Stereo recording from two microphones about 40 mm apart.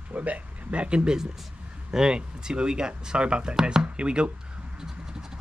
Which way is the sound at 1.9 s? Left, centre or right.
Centre.